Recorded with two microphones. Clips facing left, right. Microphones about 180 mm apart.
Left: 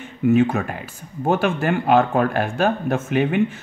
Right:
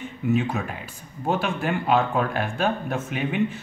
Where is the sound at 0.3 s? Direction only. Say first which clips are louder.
Left 7 dB; 50° left (ahead or behind).